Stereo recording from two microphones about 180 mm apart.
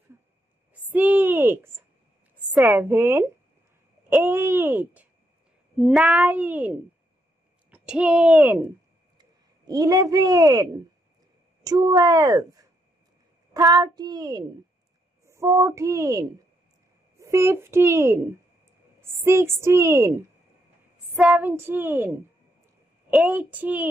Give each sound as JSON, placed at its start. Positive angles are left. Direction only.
{"t": 0.9, "sound": "a sound", "side_deg": -10}
{"t": 2.5, "sound": "a woman's voice", "side_deg": -10}
{"t": 9.2, "sound": "a woman's voice", "side_deg": -20}
{"t": 21.2, "sound": "a woman's voice", "side_deg": -5}